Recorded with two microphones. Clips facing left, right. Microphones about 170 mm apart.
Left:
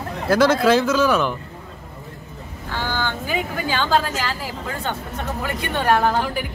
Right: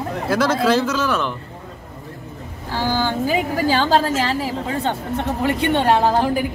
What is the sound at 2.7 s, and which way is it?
A woman's voice, 35° right (ahead or behind).